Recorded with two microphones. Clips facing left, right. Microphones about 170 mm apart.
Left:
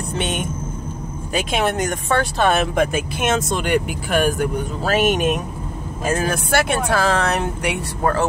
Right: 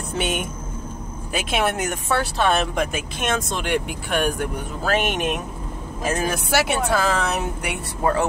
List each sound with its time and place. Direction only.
0.2 s speech: 10° right (ahead or behind)
8.0 s speech: 15° right (ahead or behind)